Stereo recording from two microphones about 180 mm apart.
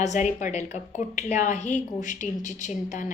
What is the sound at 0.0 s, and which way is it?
A woman's voice, 40° left (ahead or behind).